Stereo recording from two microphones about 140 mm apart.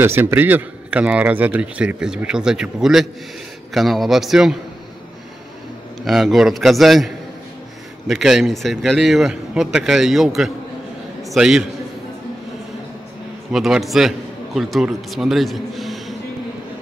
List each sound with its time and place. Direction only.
0.0 s a man's voice: 15° right (ahead or behind)
6.0 s a man's voice: centre (ahead or behind)
8.1 s a man's voice: centre (ahead or behind)
13.5 s a man's voice: centre (ahead or behind)